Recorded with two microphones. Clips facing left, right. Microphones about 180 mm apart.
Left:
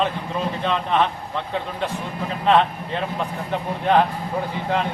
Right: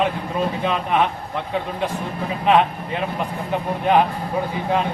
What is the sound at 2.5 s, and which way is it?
Speech, 15° right (ahead or behind).